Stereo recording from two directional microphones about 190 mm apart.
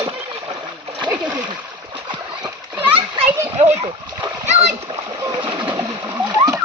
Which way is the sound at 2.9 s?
30° right (ahead or behind).